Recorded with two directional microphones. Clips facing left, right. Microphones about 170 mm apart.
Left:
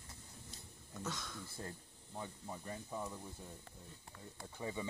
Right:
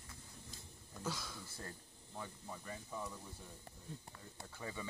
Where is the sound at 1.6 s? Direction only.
20° left (ahead or behind).